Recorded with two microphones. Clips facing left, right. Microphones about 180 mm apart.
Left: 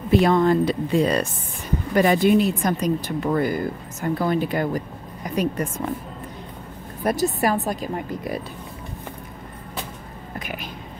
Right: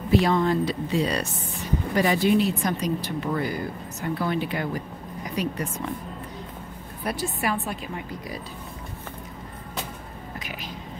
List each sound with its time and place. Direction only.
0.2 s speech: 55° left (ahead or behind)
7.0 s speech: 45° left (ahead or behind)
10.4 s whispering: 55° left (ahead or behind)